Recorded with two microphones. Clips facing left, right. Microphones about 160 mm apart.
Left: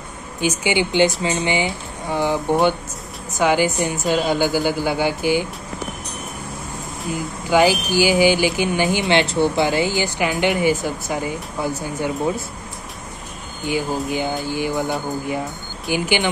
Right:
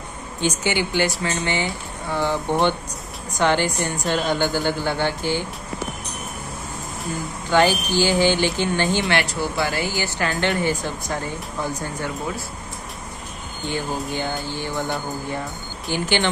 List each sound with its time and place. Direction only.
0.4 s speech: 15° left (ahead or behind)
7.4 s speech: 10° left (ahead or behind)
13.7 s speech: 10° left (ahead or behind)
15.9 s speech: 10° left (ahead or behind)